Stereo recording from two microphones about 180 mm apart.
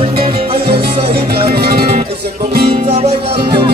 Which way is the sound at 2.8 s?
35° right (ahead or behind).